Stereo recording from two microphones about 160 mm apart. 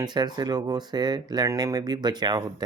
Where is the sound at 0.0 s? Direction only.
25° right (ahead or behind).